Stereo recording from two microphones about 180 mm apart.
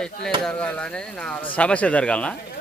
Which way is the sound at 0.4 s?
5° left (ahead or behind).